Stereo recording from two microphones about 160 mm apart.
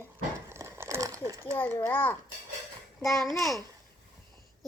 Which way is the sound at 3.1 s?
Centre (ahead or behind).